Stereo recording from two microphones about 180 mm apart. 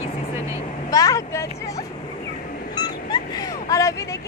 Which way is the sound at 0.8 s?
20° left (ahead or behind).